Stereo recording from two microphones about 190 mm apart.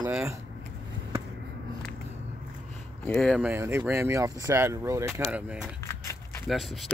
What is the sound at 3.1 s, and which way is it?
Speech, 5° left (ahead or behind).